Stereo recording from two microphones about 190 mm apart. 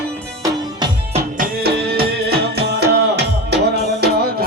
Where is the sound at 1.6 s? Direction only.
55° right (ahead or behind).